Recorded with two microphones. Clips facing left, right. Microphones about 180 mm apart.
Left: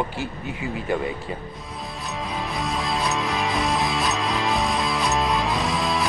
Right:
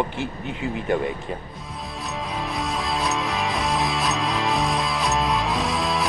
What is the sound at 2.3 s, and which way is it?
Music, centre (ahead or behind).